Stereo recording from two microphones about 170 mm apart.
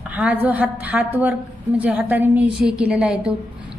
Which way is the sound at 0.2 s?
10° right (ahead or behind).